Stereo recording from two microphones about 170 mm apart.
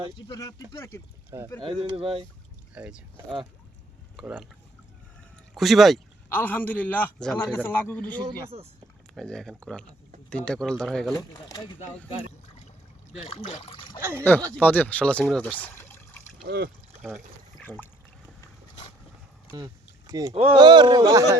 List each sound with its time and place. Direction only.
0.2 s speech: 20° left (ahead or behind)
1.6 s speech: 30° right (ahead or behind)
2.7 s speech: 5° right (ahead or behind)
4.2 s speech: 5° right (ahead or behind)
5.5 s speech: centre (ahead or behind)
6.2 s speech: 10° left (ahead or behind)
11.2 s speech: 25° left (ahead or behind)
13.2 s speech: 40° left (ahead or behind)
14.0 s speech: 15° right (ahead or behind)
14.5 s speech: 10° left (ahead or behind)
17.6 s a sound: 10° left (ahead or behind)
19.5 s a sound: 20° right (ahead or behind)
20.3 s speech: 35° right (ahead or behind)